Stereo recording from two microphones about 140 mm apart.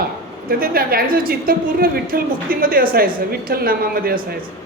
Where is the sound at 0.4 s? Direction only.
90° right.